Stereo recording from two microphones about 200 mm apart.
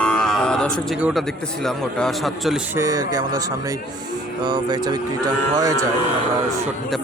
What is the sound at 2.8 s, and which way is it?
Speech, 20° right (ahead or behind).